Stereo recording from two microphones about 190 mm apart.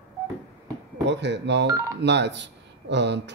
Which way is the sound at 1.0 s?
65° right (ahead or behind).